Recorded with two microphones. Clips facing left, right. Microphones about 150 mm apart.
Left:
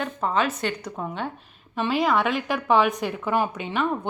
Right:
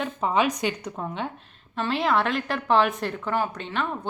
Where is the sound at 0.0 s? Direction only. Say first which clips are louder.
Right 1 dB; 5° right (ahead or behind).